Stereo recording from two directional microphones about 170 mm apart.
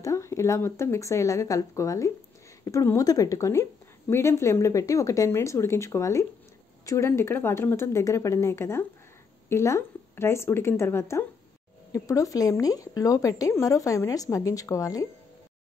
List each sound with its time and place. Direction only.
0.0 s a woman's voice: 20° left (ahead or behind)